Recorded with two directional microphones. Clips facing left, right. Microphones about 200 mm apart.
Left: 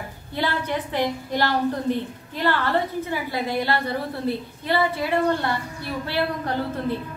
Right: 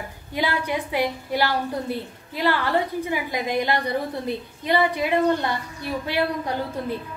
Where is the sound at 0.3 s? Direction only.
10° right (ahead or behind).